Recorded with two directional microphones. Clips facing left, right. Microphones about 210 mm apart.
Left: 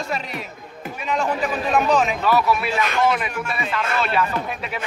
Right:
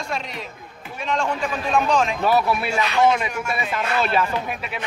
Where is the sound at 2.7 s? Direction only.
50° left (ahead or behind).